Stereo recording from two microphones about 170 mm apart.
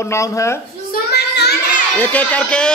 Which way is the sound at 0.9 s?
75° left (ahead or behind).